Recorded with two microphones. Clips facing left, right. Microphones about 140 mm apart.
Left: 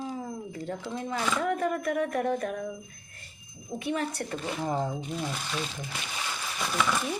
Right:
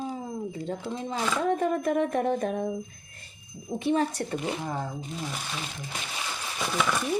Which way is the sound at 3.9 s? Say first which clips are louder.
Right 5 dB; 25° right (ahead or behind).